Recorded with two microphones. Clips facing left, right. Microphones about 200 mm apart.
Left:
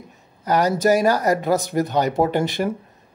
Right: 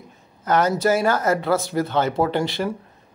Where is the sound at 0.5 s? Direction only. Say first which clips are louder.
Left 1 dB; 15° left (ahead or behind).